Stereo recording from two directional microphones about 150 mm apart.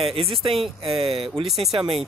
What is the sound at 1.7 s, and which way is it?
Speech, 40° right (ahead or behind).